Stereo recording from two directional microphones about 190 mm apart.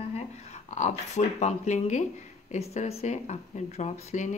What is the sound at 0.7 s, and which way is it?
Speech, 40° left (ahead or behind).